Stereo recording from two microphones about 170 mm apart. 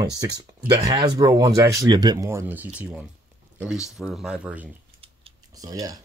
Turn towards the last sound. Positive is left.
turn(degrees=-20)  # may be behind; listen again after turning